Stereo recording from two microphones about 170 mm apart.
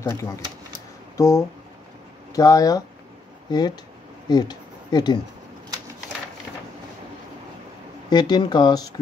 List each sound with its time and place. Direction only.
1.1 s speech: 15° left (ahead or behind)
8.1 s speech: 25° left (ahead or behind)